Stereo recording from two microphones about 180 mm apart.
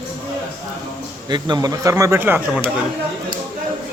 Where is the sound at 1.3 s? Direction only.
25° right (ahead or behind).